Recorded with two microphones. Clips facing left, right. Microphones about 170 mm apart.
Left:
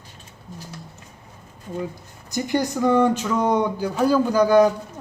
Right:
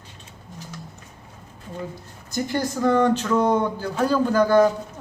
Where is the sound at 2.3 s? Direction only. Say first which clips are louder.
Left 2 dB; 15° left (ahead or behind).